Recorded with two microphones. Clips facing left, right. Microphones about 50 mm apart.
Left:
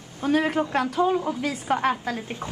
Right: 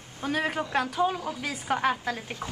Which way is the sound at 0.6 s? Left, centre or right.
Left.